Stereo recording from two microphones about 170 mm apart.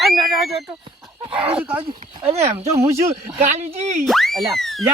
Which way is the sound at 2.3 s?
40° right (ahead or behind).